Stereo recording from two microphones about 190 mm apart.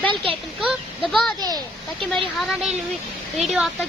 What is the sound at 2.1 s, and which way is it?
Speech, centre (ahead or behind).